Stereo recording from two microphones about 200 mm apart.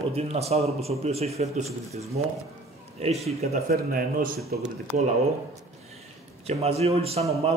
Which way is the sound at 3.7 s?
50° right (ahead or behind).